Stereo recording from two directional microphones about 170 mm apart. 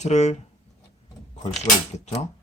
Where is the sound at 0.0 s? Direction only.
40° left (ahead or behind).